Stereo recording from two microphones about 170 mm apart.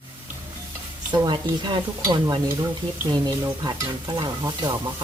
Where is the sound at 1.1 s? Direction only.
25° right (ahead or behind).